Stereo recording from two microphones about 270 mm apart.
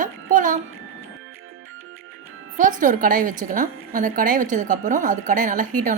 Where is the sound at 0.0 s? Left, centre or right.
Right.